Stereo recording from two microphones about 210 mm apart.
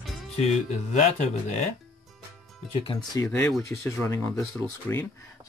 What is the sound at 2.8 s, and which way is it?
Speech, 20° left (ahead or behind).